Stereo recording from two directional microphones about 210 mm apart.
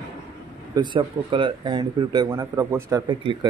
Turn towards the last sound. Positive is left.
turn(degrees=-20)  # may be behind; listen again after turning